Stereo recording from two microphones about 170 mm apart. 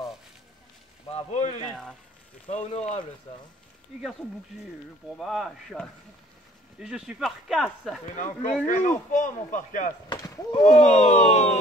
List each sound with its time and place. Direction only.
1.0 s speech: 35° left (ahead or behind)
1.7 s speech: 5° left (ahead or behind)
2.4 s speech: 40° left (ahead or behind)
5.1 s speech: centre (ahead or behind)
8.6 s speech: 50° left (ahead or behind)
10.0 s speech: 20° left (ahead or behind)
10.6 s speech: 45° left (ahead or behind)